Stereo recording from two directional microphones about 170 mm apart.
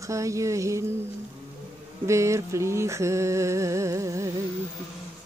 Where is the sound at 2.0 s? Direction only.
15° right (ahead or behind).